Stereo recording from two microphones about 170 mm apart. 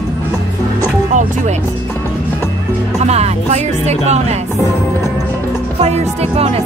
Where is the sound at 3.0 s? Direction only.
40° right (ahead or behind).